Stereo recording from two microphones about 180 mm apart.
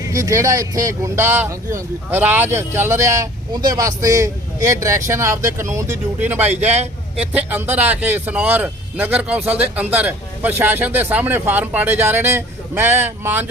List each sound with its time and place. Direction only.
0.0 s a man's voice: 15° right (ahead or behind)